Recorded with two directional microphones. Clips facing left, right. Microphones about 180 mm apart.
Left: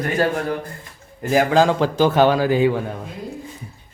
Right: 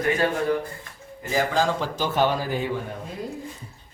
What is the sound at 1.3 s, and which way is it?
A man's voice, 60° left (ahead or behind).